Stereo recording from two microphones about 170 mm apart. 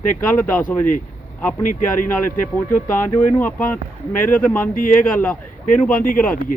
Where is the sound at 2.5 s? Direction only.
10° left (ahead or behind).